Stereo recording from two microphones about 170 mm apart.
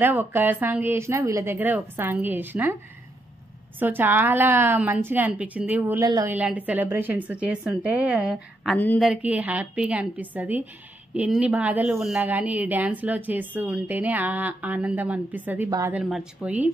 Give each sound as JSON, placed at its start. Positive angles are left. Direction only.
{"t": 0.0, "sound": "speech", "side_deg": -10}
{"t": 3.8, "sound": "speech", "side_deg": -10}
{"t": 6.0, "sound": "a woman's voice", "side_deg": -20}
{"t": 6.3, "sound": "speech", "side_deg": -10}
{"t": 8.7, "sound": "speech", "side_deg": 10}
{"t": 9.1, "sound": "speech", "side_deg": -10}